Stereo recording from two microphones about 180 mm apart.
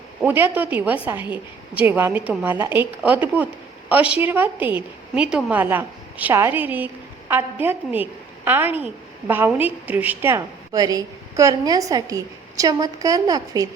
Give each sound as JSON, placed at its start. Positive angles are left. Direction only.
{"t": 0.2, "sound": "a woman's voice", "side_deg": -10}